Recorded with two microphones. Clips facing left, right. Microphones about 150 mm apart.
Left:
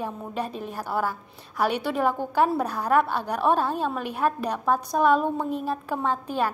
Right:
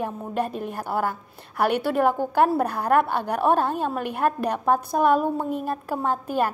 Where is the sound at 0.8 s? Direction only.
15° right (ahead or behind).